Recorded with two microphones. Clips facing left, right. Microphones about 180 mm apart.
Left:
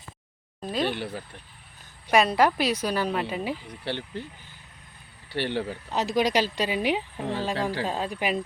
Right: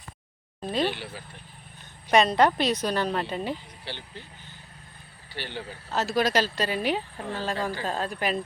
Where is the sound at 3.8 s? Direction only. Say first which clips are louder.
Left 9 dB; 60° left (ahead or behind).